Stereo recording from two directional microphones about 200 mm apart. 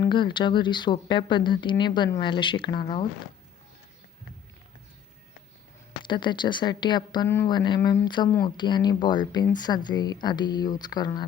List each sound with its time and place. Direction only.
0.0 s speech: 25° left (ahead or behind)
6.1 s speech: 25° left (ahead or behind)